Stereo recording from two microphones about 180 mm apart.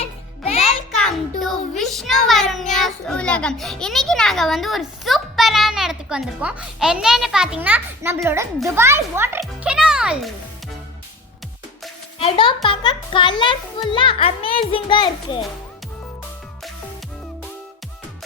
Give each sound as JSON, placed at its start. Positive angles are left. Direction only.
{"t": 0.0, "sound": "music", "side_deg": 35}
{"t": 0.6, "sound": "a child's voice", "side_deg": 0}
{"t": 12.2, "sound": "a child's voice", "side_deg": 30}